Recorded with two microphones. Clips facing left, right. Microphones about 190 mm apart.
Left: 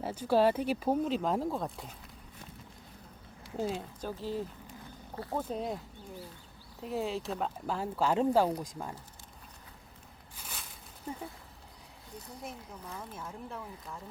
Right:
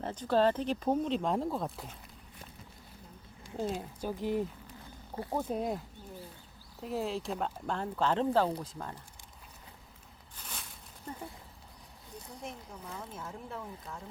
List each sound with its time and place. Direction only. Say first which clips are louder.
0.0 s speech: left 1 dB; 10° left (ahead or behind)
3.6 s speech: left 1 dB; centre (ahead or behind)
4.0 s speech: right 5 dB; 15° right (ahead or behind)
5.4 s speech: right 2 dB; 5° right (ahead or behind)
6.8 s speech: even; centre (ahead or behind)
10.3 s a sound: even; 5° left (ahead or behind)
12.4 s speech: right 1 dB; centre (ahead or behind)